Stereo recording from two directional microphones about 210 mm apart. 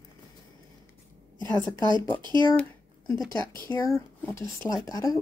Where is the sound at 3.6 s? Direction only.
15° left (ahead or behind).